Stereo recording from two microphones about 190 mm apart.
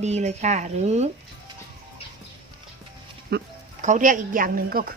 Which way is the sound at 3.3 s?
60° right (ahead or behind).